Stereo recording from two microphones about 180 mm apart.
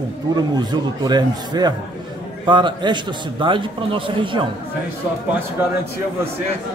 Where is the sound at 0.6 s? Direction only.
25° right (ahead or behind).